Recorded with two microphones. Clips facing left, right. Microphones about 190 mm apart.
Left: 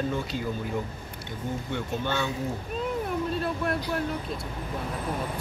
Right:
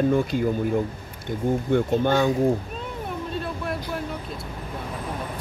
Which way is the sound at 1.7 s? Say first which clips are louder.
Right 10 dB; 45° right (ahead or behind).